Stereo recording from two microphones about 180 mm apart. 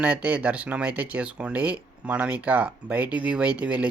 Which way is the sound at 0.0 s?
5° right (ahead or behind).